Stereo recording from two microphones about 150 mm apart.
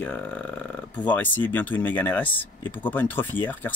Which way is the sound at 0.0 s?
10° left (ahead or behind).